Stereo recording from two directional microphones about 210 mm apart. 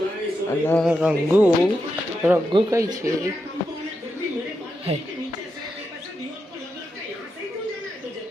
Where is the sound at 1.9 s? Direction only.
10° right (ahead or behind).